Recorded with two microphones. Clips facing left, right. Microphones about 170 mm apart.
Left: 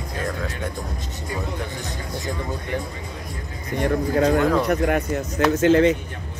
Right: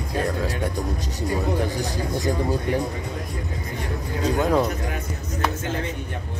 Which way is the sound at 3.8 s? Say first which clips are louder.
Left 9 dB; 65° left (ahead or behind).